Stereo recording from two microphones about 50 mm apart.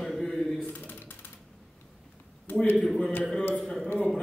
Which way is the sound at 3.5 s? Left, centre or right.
Centre.